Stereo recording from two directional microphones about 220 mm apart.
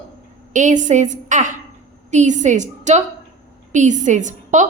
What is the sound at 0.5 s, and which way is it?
A woman's voice, 35° right (ahead or behind).